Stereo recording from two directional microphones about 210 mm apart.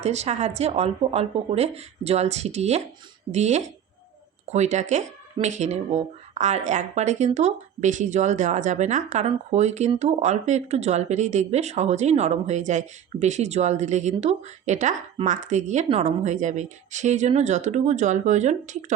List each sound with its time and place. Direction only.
0.0 s speech: 30° right (ahead or behind)